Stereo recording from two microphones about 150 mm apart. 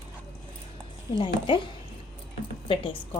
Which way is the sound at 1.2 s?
35° left (ahead or behind).